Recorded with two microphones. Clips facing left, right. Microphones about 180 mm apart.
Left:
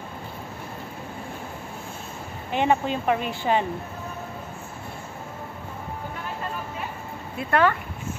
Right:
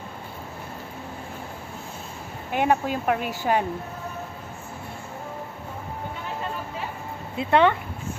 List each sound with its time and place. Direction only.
2.5 s speech: 10° right (ahead or behind)
7.3 s speech: 25° right (ahead or behind)